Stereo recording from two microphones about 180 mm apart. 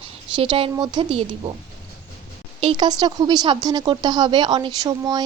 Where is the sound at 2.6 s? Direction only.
25° right (ahead or behind).